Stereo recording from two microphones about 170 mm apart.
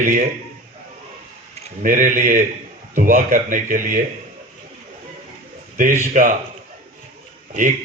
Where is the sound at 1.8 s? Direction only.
50° right (ahead or behind).